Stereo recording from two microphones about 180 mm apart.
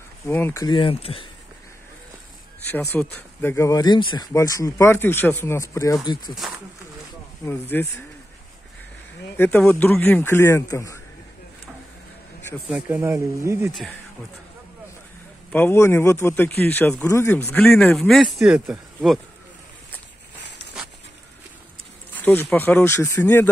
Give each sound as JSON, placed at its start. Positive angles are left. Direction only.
{"t": 0.3, "sound": "speech", "side_deg": 15}
{"t": 2.7, "sound": "speech", "side_deg": 10}
{"t": 7.7, "sound": "speech", "side_deg": 10}
{"t": 9.4, "sound": "speech", "side_deg": 10}
{"t": 12.6, "sound": "speech", "side_deg": -10}
{"t": 15.5, "sound": "speech", "side_deg": 10}
{"t": 22.2, "sound": "speech", "side_deg": 10}